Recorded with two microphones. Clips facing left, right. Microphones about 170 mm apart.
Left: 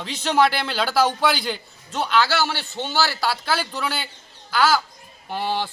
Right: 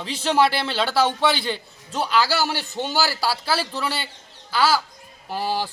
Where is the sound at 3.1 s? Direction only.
10° right (ahead or behind).